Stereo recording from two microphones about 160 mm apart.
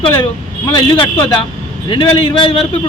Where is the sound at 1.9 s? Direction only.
35° left (ahead or behind).